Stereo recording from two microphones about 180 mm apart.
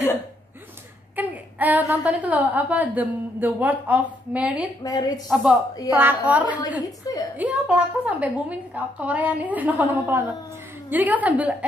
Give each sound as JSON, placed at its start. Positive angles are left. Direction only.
{"t": 1.1, "sound": "a woman's voice", "side_deg": -10}
{"t": 4.8, "sound": "a woman's voice", "side_deg": 20}
{"t": 5.3, "sound": "a woman's voice", "side_deg": -5}
{"t": 6.8, "sound": "a woman's voice", "side_deg": 20}
{"t": 7.3, "sound": "a woman's voice", "side_deg": -5}